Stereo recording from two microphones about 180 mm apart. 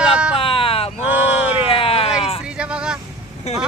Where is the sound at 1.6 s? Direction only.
30° left (ahead or behind).